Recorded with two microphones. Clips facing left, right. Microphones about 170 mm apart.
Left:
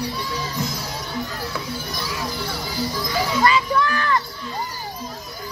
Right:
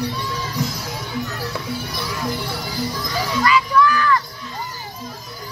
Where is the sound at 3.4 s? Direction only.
30° left (ahead or behind).